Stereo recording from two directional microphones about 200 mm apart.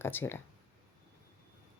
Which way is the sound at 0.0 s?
10° left (ahead or behind).